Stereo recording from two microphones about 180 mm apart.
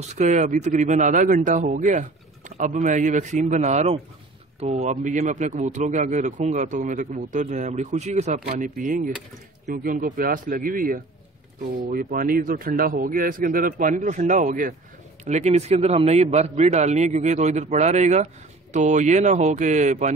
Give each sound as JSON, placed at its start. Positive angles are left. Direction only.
{"t": 0.1, "sound": "a man's voice", "side_deg": -45}